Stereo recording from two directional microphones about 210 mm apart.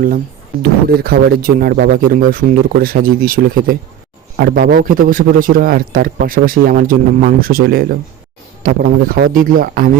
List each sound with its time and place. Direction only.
0.6 s a man's voice: 50° right (ahead or behind)